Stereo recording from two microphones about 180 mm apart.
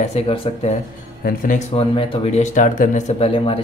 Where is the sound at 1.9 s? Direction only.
30° left (ahead or behind).